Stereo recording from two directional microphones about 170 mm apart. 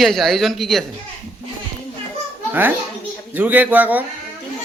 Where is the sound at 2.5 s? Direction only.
10° right (ahead or behind).